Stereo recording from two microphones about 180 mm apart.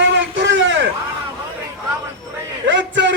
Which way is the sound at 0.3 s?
90° right.